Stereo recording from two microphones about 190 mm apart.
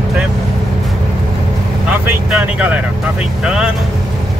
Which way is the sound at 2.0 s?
5° right (ahead or behind).